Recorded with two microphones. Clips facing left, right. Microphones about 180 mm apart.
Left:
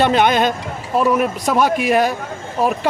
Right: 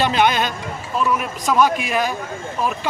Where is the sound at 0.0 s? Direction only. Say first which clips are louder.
Left 4 dB; 50° left (ahead or behind).